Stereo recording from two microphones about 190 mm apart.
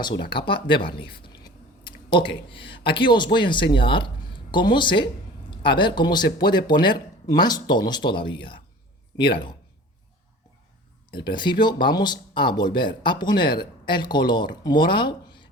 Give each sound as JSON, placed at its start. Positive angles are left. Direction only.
{"t": 0.3, "sound": "speech", "side_deg": 25}
{"t": 1.1, "sound": "chewing", "side_deg": 25}
{"t": 2.1, "sound": "speech", "side_deg": 25}
{"t": 11.1, "sound": "speech", "side_deg": 25}